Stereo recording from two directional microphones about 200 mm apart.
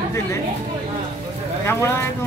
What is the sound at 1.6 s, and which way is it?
Speech, 10° left (ahead or behind).